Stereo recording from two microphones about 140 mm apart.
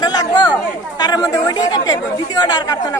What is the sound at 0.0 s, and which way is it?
Chatter, 30° left (ahead or behind).